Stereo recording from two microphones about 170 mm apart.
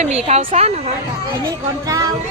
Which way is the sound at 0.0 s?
40° right (ahead or behind).